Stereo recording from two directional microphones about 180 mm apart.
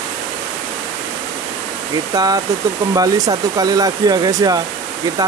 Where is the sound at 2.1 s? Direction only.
20° right (ahead or behind).